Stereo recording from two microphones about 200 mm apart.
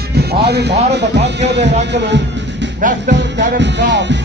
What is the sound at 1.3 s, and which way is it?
Music, 60° right (ahead or behind).